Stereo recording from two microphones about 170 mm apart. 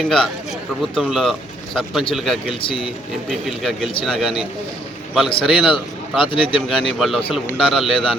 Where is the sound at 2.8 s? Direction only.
Centre (ahead or behind).